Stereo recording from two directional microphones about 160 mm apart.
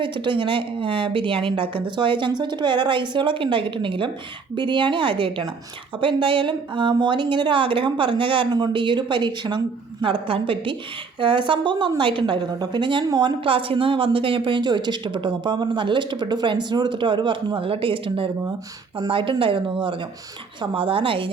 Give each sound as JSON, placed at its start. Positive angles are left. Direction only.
{"t": 0.0, "sound": "a woman's voice", "side_deg": -30}